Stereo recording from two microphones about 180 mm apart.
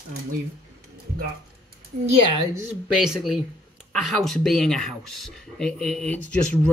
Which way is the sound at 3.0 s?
Centre (ahead or behind).